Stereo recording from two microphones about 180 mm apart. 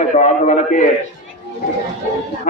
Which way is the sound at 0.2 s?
45° left (ahead or behind).